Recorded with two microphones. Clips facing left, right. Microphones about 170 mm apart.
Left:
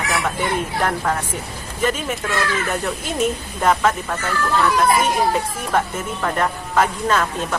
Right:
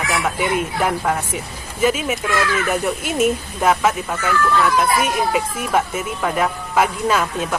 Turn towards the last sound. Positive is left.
turn(degrees=-10)  # may be behind; listen again after turning